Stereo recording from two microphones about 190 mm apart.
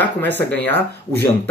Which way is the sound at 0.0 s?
10° left (ahead or behind).